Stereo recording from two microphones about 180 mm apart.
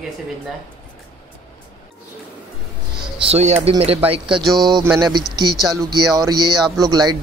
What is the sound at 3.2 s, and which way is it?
Speech, 35° right (ahead or behind).